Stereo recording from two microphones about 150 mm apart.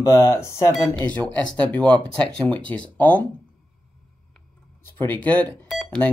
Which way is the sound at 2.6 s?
10° left (ahead or behind).